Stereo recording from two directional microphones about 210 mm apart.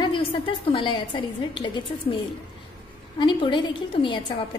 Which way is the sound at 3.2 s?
25° left (ahead or behind).